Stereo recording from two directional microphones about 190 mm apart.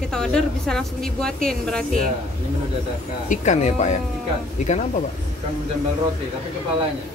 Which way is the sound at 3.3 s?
40° left (ahead or behind).